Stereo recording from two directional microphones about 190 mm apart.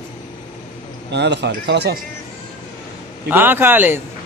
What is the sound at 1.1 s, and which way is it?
Speech, 65° right (ahead or behind).